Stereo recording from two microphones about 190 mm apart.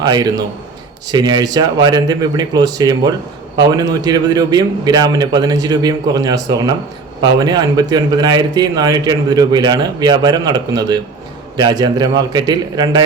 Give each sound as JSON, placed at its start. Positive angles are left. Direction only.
{"t": 0.0, "sound": "a man's voice", "side_deg": -20}